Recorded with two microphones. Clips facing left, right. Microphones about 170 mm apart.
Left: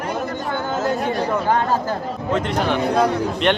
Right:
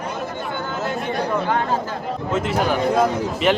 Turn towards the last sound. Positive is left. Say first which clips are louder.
# even
turn(degrees=-5)  # may be behind; listen again after turning